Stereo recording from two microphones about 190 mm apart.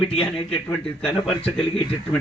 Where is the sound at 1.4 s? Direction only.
30° left (ahead or behind).